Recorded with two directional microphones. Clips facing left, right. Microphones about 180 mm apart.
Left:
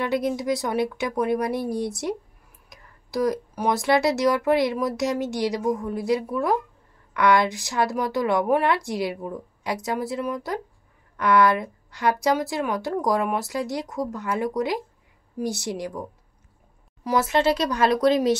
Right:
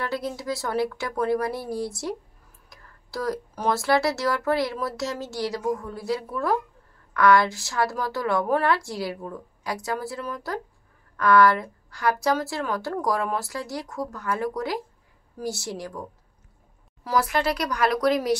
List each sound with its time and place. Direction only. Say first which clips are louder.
0.0 s speech: left 5 dB; 20° left (ahead or behind)